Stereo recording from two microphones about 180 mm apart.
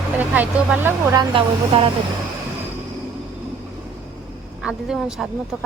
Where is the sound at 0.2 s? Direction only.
10° right (ahead or behind); by 1.9 s 30° right (ahead or behind).